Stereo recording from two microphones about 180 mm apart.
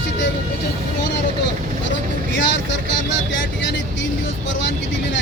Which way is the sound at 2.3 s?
90° left.